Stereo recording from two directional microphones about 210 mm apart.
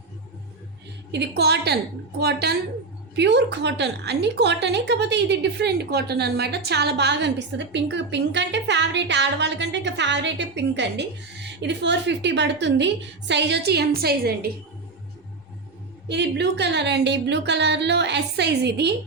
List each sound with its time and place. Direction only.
1.1 s a woman's voice: 50° right (ahead or behind)
16.0 s a woman's voice: 55° right (ahead or behind)